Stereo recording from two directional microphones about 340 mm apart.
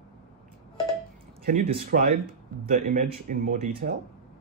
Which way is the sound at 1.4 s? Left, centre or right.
Right.